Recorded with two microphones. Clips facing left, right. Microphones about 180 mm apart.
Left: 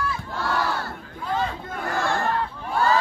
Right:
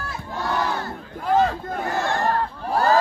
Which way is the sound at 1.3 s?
45° right (ahead or behind).